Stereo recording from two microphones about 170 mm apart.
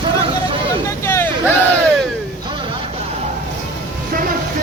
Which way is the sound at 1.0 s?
15° left (ahead or behind).